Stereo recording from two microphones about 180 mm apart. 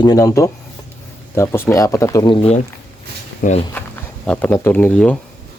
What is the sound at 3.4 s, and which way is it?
Speech, 50° left (ahead or behind).